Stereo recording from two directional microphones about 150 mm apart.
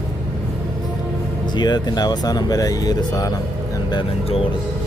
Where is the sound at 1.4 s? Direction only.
30° left (ahead or behind).